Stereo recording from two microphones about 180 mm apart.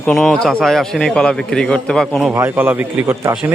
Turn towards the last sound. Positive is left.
turn(degrees=-10)  # may be behind; listen again after turning